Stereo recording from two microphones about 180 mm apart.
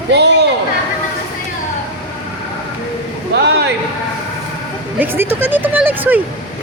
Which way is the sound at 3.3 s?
70° right (ahead or behind).